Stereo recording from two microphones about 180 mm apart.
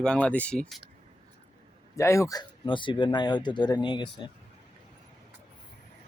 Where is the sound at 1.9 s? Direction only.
15° left (ahead or behind).